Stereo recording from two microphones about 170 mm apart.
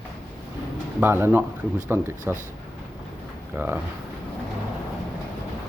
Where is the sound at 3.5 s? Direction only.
10° right (ahead or behind).